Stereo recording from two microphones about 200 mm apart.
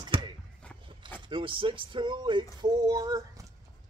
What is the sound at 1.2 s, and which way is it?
Speech, 25° right (ahead or behind).